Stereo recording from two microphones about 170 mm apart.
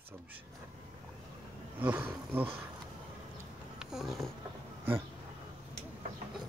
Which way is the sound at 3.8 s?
Centre (ahead or behind).